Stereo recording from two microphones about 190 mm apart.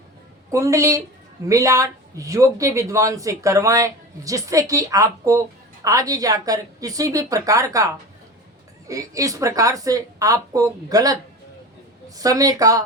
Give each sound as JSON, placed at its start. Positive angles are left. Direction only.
{"t": 0.5, "sound": "speech", "side_deg": -15}
{"t": 8.9, "sound": "speech", "side_deg": -15}